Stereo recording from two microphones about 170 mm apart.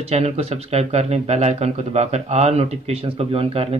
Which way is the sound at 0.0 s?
35° right (ahead or behind).